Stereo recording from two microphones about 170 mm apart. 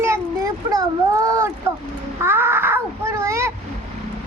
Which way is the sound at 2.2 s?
15° right (ahead or behind).